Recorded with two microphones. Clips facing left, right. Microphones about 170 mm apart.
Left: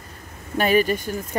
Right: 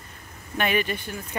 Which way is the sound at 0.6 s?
40° left (ahead or behind).